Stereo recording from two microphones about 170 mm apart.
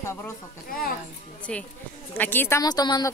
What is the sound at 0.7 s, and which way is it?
Speech, 60° left (ahead or behind).